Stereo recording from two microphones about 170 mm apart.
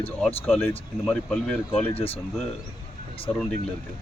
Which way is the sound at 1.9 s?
35° left (ahead or behind).